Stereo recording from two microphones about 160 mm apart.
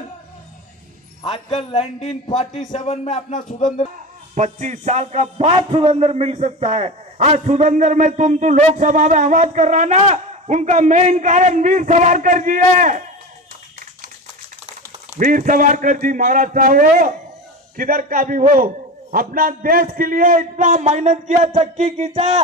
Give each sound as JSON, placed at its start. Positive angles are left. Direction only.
{"t": 1.5, "sound": "a man's voice", "side_deg": 40}
{"t": 4.4, "sound": "a man's voice", "side_deg": -45}
{"t": 15.1, "sound": "a man's voice", "side_deg": -55}
{"t": 22.1, "sound": "a sound", "side_deg": -40}